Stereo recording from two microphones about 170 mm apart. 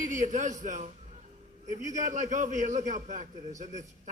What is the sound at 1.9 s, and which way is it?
A man's voice, 45° right (ahead or behind).